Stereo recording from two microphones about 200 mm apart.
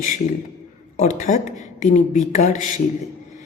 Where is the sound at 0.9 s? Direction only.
35° left (ahead or behind).